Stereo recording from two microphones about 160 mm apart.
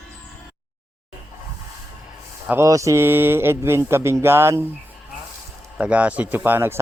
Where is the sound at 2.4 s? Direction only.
15° right (ahead or behind).